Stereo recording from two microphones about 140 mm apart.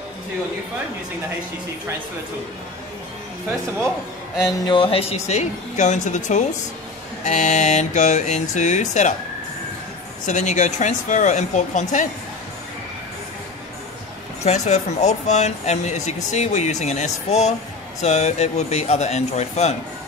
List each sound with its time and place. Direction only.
4.6 s a woman's voice: 40° left (ahead or behind); by 9.1 s 60° left (ahead or behind)
10.2 s speech: 60° left (ahead or behind)
14.4 s a woman's voice: 50° left (ahead or behind)